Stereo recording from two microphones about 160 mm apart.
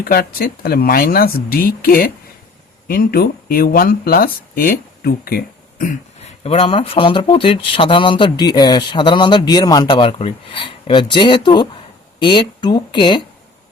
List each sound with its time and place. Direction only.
0.0 s speech: 70° left (ahead or behind)
6.4 s speech: 35° left (ahead or behind)